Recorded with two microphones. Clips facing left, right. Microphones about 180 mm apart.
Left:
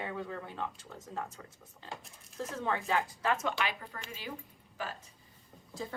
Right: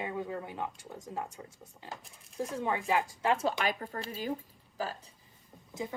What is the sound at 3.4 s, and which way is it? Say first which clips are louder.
Speech: right 3 dB; 40° right (ahead or behind).